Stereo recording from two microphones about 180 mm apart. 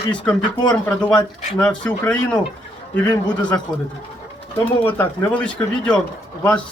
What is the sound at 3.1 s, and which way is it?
Speech, 25° left (ahead or behind).